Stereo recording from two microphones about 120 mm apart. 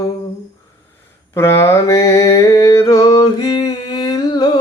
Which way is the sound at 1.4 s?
20° left (ahead or behind).